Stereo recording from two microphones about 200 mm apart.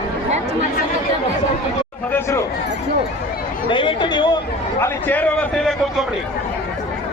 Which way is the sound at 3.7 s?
25° left (ahead or behind).